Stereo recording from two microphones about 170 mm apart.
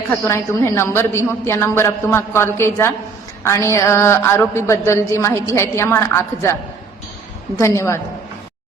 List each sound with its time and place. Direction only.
0.1 s a woman's voice: 15° left (ahead or behind)